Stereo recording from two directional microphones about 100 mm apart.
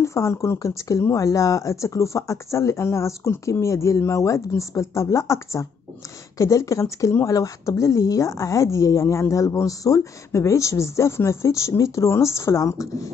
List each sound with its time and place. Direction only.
0.0 s speech: 30° left (ahead or behind)